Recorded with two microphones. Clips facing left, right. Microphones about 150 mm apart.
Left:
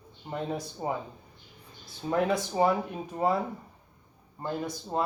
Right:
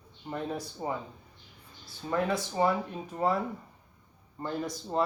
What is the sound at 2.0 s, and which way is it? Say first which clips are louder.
Speech: left 3 dB; 15° left (ahead or behind).